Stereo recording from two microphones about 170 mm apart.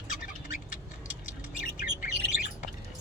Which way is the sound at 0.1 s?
55° left (ahead or behind).